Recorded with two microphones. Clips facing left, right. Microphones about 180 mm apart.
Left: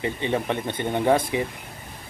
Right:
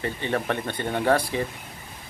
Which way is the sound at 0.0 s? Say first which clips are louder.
Left 2 dB; 15° left (ahead or behind).